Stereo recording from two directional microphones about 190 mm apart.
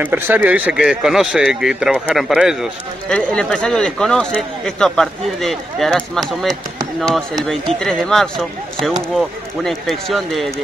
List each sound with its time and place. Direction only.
0.0 s speech: 10° right (ahead or behind)